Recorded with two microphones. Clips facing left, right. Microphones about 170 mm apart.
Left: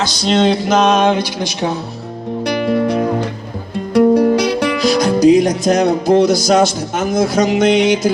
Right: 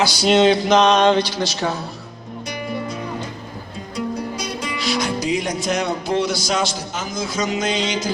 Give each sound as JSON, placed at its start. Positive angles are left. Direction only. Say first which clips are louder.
{"t": 0.0, "sound": "speech", "louder": "left 1 dB", "side_deg": -10}
{"t": 2.5, "sound": "music", "louder": "left 12 dB", "side_deg": 75}
{"t": 4.8, "sound": "music", "louder": "left 10 dB", "side_deg": 40}